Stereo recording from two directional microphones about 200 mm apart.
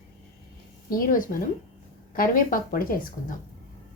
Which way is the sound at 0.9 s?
45° left (ahead or behind).